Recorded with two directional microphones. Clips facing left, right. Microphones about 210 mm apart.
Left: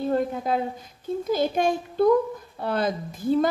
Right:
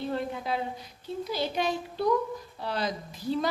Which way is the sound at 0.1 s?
45° left (ahead or behind).